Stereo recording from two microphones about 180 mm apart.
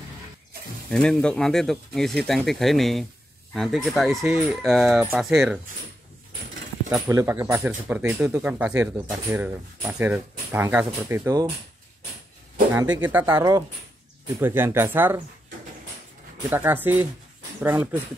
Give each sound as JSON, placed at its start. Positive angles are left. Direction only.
{"t": 0.8, "sound": "speech", "side_deg": 5}
{"t": 6.9, "sound": "speech", "side_deg": -15}
{"t": 13.0, "sound": "speech", "side_deg": -10}
{"t": 16.4, "sound": "speech", "side_deg": -10}